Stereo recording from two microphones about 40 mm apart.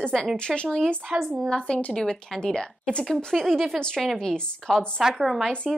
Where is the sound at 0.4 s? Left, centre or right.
Left.